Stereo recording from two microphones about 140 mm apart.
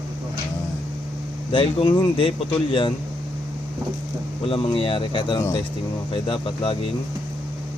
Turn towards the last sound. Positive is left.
turn(degrees=40)  # may be behind; listen again after turning